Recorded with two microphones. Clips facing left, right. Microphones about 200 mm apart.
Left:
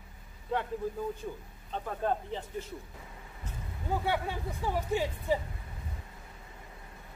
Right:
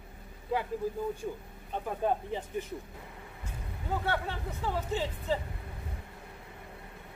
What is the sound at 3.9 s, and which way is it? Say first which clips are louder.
Speech: left 1 dB; 10° left (ahead or behind).